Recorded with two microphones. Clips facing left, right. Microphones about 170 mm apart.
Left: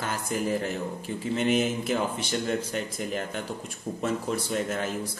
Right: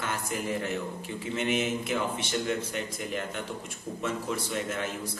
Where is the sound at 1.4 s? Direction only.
40° left (ahead or behind).